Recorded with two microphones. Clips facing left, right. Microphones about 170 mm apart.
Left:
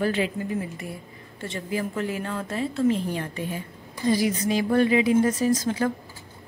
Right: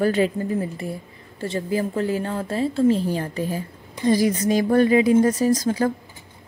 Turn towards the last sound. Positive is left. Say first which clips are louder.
# right 3 dB
turn(degrees=-35)  # may be behind; listen again after turning